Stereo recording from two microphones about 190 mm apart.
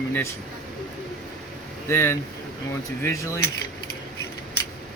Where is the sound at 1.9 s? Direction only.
15° left (ahead or behind).